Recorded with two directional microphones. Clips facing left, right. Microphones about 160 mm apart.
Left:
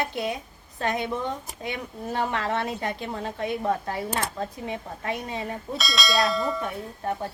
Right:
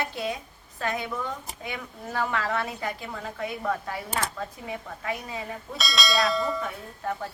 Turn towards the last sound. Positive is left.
turn(degrees=20)  # may be behind; listen again after turning